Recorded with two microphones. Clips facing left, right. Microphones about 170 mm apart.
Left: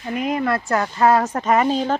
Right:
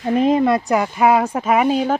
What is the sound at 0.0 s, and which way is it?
Speech, 30° right (ahead or behind).